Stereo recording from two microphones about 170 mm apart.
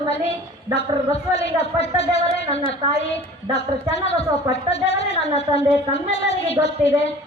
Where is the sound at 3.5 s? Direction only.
40° left (ahead or behind).